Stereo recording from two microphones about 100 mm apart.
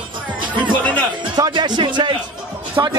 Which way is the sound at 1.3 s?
45° right (ahead or behind).